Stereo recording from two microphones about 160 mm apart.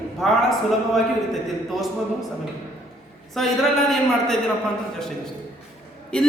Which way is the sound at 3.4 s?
Centre (ahead or behind).